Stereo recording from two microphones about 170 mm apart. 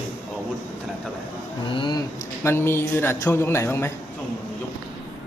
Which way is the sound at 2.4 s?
15° left (ahead or behind).